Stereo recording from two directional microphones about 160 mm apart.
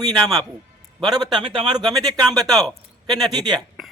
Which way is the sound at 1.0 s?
25° right (ahead or behind).